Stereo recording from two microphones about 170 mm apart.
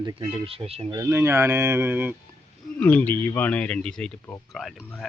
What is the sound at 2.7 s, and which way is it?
Speech, 10° left (ahead or behind).